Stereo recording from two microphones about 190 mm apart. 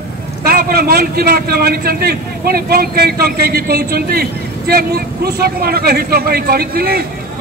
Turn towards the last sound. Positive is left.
turn(degrees=-55)  # may be behind; listen again after turning